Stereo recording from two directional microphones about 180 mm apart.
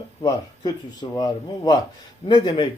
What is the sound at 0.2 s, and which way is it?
Speech, 25° left (ahead or behind).